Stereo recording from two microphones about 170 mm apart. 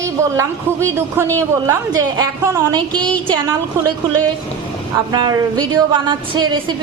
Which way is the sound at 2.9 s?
5° left (ahead or behind).